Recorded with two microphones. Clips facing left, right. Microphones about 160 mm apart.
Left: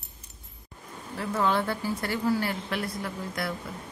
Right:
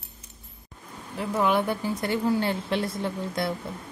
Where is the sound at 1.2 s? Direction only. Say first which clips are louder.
Right 3 dB; 15° right (ahead or behind).